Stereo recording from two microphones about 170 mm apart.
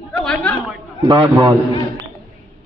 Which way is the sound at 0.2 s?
5° left (ahead or behind).